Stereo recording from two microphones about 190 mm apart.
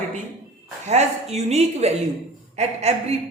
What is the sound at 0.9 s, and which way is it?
Speech, 35° right (ahead or behind).